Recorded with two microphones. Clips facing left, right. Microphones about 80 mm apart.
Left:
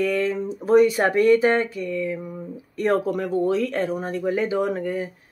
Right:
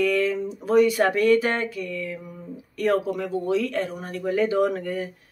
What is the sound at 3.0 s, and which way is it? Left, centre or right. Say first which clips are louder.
Speech: left 4 dB; left.